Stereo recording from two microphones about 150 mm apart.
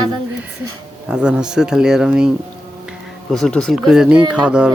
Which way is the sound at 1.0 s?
5° right (ahead or behind).